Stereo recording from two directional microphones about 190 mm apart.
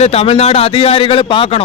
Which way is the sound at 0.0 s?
30° left (ahead or behind).